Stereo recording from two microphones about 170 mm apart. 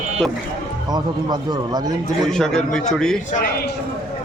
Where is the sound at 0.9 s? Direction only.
25° right (ahead or behind).